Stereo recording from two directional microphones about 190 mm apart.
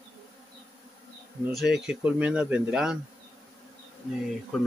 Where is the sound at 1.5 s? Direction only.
Centre (ahead or behind).